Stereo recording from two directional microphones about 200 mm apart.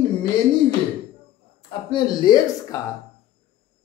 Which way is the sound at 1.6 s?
25° left (ahead or behind).